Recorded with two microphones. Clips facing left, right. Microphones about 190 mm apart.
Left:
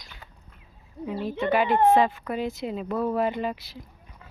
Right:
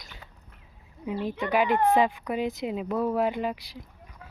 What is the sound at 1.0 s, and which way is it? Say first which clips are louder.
Speech: left 2 dB; 15° right (ahead or behind).